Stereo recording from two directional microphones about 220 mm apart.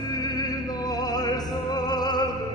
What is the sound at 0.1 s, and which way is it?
Music, 15° left (ahead or behind).